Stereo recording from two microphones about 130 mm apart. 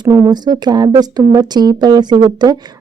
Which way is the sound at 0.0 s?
30° right (ahead or behind).